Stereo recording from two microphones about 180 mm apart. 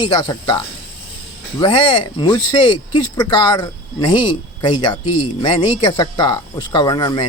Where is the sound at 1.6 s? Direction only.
25° left (ahead or behind).